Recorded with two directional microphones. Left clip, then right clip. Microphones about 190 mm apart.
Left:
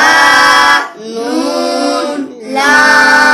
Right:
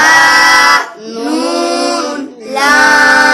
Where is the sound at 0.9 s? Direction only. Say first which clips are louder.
Left 2 dB; 5° left (ahead or behind).